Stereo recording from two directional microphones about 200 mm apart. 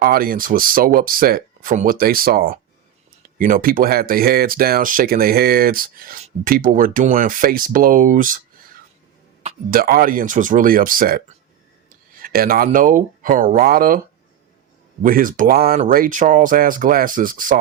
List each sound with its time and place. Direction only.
0.0 s speech: 45° right (ahead or behind)
12.2 s speech: 50° right (ahead or behind)
15.0 s speech: 45° right (ahead or behind)